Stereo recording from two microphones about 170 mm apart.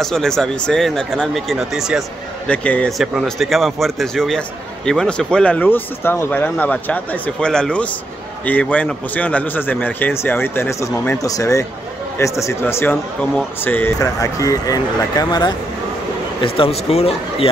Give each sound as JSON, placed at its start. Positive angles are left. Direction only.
{"t": 0.0, "sound": "a man's voice", "side_deg": 5}